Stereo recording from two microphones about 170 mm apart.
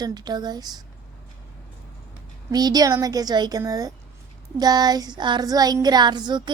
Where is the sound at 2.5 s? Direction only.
25° right (ahead or behind).